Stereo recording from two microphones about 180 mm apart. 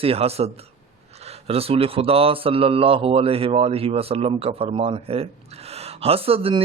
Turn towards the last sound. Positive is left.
turn(degrees=-30)  # may be behind; listen again after turning